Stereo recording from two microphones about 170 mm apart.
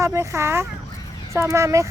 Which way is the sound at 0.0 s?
15° right (ahead or behind).